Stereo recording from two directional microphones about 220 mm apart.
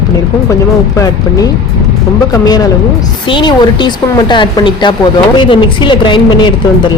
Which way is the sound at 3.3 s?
20° left (ahead or behind).